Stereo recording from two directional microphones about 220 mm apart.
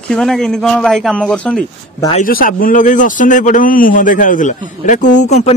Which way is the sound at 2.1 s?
40° left (ahead or behind).